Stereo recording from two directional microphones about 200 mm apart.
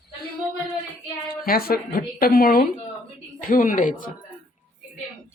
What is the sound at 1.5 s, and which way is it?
A woman's voice, 50° left (ahead or behind).